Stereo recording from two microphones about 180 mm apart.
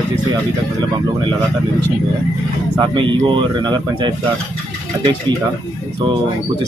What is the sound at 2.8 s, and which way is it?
Speech, 25° right (ahead or behind).